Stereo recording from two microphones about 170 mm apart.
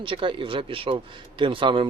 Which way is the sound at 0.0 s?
30° right (ahead or behind).